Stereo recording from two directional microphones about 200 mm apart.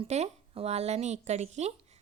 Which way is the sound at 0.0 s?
30° right (ahead or behind).